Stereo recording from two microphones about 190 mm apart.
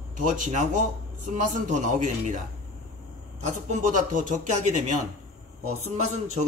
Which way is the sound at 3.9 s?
40° right (ahead or behind).